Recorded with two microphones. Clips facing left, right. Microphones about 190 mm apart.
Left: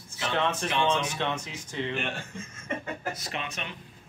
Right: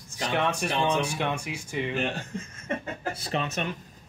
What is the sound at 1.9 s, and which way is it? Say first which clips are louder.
Speech: right 4 dB; 40° right (ahead or behind).